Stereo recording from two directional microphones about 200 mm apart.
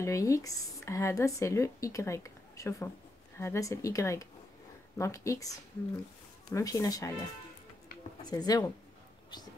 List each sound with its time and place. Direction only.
0.0 s speech: 15° left (ahead or behind)
6.5 s speech: 15° left (ahead or behind)
8.2 s speech: 20° left (ahead or behind)